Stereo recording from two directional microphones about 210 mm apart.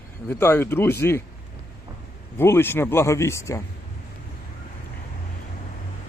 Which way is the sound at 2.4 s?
10° left (ahead or behind).